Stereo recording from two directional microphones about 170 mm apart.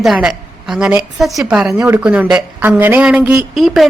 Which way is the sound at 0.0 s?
5° right (ahead or behind).